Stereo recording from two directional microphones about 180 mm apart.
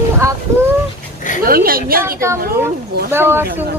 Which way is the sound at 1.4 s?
55° right (ahead or behind).